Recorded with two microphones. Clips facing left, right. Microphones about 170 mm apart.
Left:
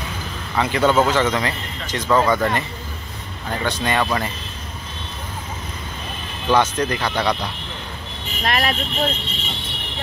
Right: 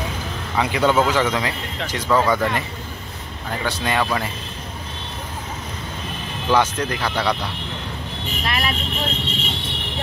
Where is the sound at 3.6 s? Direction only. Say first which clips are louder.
Left 1 dB; 5° right (ahead or behind).